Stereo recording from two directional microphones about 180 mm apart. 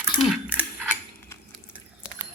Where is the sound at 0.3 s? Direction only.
10° right (ahead or behind).